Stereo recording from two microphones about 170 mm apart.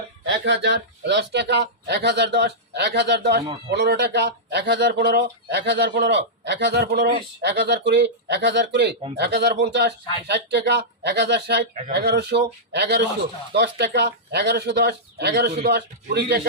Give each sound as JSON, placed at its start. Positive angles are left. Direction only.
{"t": 0.3, "sound": "speech", "side_deg": -85}
{"t": 9.1, "sound": "speech", "side_deg": -75}